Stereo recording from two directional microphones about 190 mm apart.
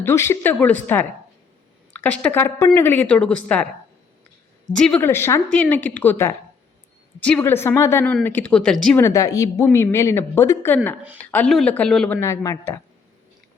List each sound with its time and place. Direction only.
0.0 s a woman's voice: 15° left (ahead or behind)
4.7 s a woman's voice: 5° left (ahead or behind)
9.0 s a woman's voice: 15° left (ahead or behind)